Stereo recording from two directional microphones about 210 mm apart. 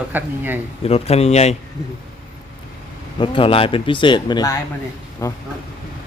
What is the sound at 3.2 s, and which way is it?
A man's voice, 25° left (ahead or behind).